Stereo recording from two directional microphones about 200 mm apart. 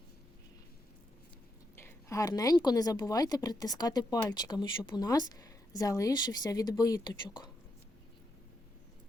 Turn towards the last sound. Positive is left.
turn(degrees=20)  # may be behind; listen again after turning